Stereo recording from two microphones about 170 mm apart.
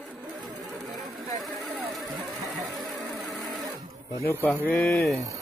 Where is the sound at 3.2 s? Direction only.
Centre (ahead or behind).